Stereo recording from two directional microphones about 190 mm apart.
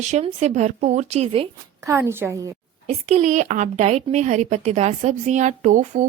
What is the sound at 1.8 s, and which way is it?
Speech, 15° right (ahead or behind).